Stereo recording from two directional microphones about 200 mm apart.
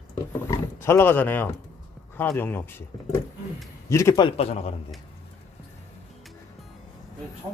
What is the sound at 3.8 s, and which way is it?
Speech, 15° left (ahead or behind).